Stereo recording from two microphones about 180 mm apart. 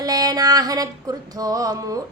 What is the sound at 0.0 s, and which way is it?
Music, 20° right (ahead or behind).